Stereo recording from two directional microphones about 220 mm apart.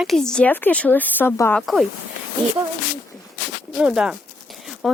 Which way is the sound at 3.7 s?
5° right (ahead or behind).